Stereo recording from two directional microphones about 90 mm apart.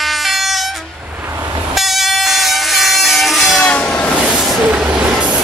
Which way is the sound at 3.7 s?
15° left (ahead or behind).